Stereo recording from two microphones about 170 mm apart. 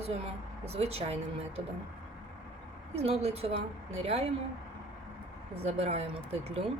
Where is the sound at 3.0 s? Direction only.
35° right (ahead or behind).